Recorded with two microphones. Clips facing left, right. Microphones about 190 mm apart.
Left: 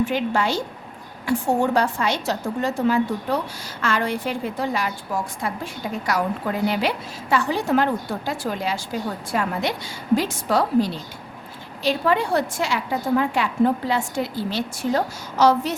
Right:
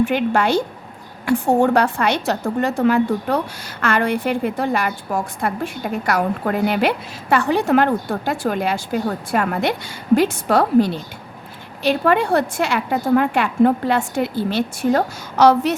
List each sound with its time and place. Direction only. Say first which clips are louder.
0.0 s a woman's voice: right 4 dB; 60° right (ahead or behind)